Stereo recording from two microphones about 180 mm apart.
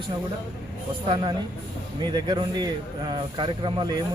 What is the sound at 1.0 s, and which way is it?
A man's voice, 30° right (ahead or behind).